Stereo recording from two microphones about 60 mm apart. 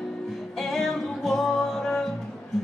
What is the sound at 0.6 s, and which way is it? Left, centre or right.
Music, centre.